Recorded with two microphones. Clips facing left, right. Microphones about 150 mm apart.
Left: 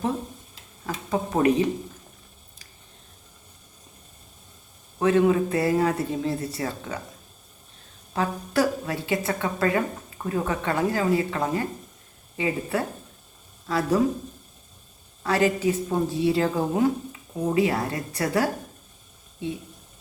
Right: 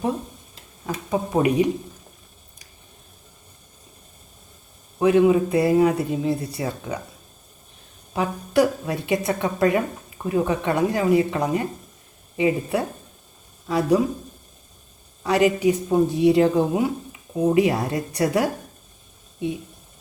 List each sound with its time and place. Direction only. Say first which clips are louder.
1.1 s a woman's voice: right 1 dB; 10° right (ahead or behind)
4.9 s a man's voice: right 3 dB; 15° right (ahead or behind)
8.1 s a woman's voice: right 4 dB; 15° right (ahead or behind)
15.2 s a woman's voice: right 4 dB; 15° right (ahead or behind)